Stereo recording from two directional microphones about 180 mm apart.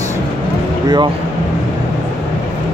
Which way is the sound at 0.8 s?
25° right (ahead or behind).